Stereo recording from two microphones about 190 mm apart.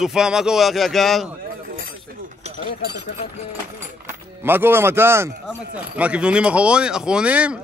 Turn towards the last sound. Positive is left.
turn(degrees=-5)  # may be behind; listen again after turning